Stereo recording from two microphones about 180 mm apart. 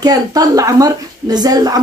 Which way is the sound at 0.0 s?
20° right (ahead or behind).